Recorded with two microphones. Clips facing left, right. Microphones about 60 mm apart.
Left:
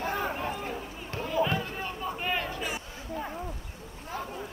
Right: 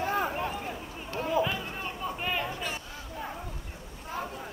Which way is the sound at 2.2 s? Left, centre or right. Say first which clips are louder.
Left 1 dB; centre.